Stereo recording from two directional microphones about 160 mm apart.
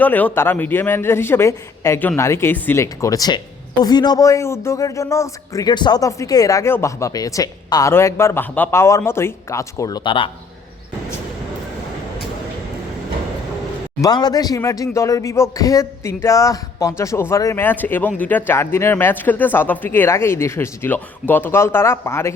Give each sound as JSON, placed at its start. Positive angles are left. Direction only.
{"t": 0.0, "sound": "a man's voice", "side_deg": 10}
{"t": 14.0, "sound": "speech", "side_deg": 25}